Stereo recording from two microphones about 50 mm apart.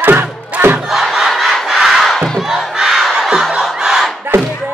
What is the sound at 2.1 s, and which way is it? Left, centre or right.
Crowd, centre.